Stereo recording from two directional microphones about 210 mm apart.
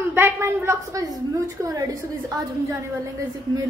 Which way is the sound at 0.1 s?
10° right (ahead or behind).